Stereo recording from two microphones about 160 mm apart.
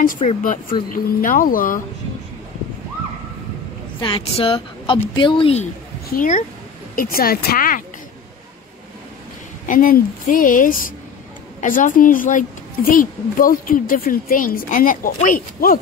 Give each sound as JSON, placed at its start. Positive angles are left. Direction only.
{"t": 0.0, "sound": "a woman's voice", "side_deg": 60}
{"t": 4.0, "sound": "a woman's voice", "side_deg": 35}
{"t": 6.0, "sound": "a woman's voice", "side_deg": 60}
{"t": 9.7, "sound": "a woman's voice", "side_deg": 60}